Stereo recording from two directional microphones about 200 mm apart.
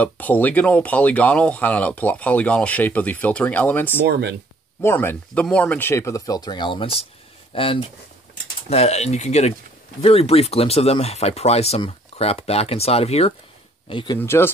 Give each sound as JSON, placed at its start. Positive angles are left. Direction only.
{"t": 0.0, "sound": "speech", "side_deg": 10}
{"t": 4.1, "sound": "speech", "side_deg": -60}
{"t": 4.8, "sound": "speech", "side_deg": 10}
{"t": 14.2, "sound": "speech", "side_deg": 10}